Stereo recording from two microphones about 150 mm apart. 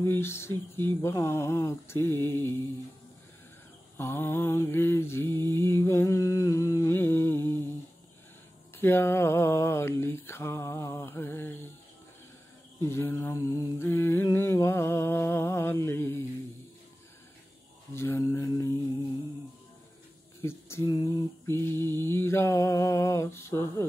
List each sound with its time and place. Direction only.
0.0 s mantra: 15° left (ahead or behind)
4.0 s mantra: 15° left (ahead or behind)
8.7 s a sound: 15° left (ahead or behind)
12.8 s mantra: 15° left (ahead or behind)
17.9 s a sound: 15° left (ahead or behind)
20.4 s mantra: 15° left (ahead or behind)